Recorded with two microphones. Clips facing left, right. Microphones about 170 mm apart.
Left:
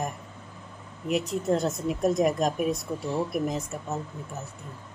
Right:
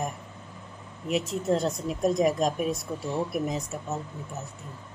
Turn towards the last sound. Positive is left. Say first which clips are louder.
# even
turn(degrees=0)  # may be behind; listen again after turning